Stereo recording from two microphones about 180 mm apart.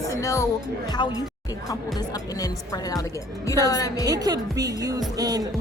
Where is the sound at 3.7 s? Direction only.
20° left (ahead or behind).